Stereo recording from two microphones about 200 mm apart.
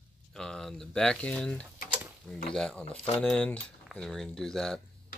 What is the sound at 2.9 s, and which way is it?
Speech, 30° left (ahead or behind).